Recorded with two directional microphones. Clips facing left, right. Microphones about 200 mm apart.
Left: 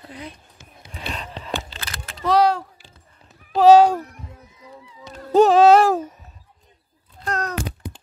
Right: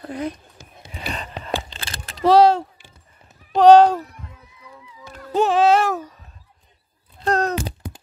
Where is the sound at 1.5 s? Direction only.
30° right (ahead or behind).